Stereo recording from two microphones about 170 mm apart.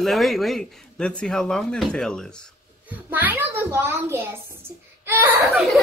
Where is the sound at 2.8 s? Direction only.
10° right (ahead or behind).